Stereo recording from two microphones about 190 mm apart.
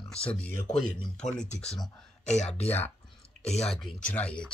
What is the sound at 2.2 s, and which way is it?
Speech, 35° left (ahead or behind).